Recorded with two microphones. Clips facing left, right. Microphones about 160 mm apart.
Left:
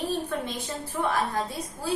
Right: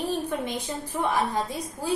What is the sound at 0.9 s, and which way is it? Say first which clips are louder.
Speech: right 1 dB; 20° right (ahead or behind).